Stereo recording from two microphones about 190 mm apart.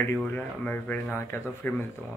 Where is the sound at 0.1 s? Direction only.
10° left (ahead or behind).